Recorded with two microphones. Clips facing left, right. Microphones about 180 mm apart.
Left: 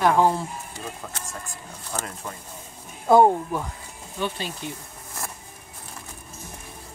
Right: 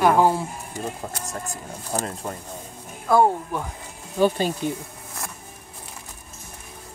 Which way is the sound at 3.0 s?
20° left (ahead or behind).